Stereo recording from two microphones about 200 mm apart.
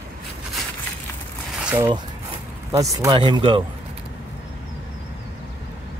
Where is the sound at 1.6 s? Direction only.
10° right (ahead or behind).